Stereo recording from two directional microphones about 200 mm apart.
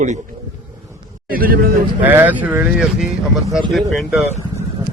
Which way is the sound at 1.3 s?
45° right (ahead or behind).